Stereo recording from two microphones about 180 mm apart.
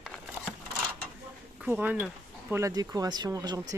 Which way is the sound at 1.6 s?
10° right (ahead or behind).